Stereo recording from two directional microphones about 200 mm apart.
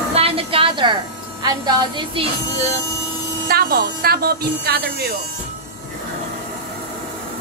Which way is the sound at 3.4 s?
50° right (ahead or behind).